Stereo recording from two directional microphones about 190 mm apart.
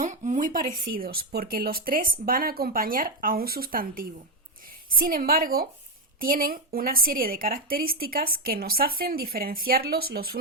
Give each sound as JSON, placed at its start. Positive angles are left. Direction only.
{"t": 0.0, "sound": "a woman's voice", "side_deg": -40}